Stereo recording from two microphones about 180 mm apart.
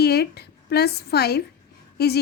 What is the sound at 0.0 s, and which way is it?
A woman's voice, 60° left (ahead or behind).